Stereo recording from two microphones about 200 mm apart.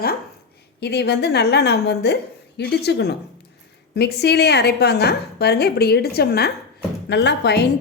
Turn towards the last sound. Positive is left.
turn(degrees=55)  # may be behind; listen again after turning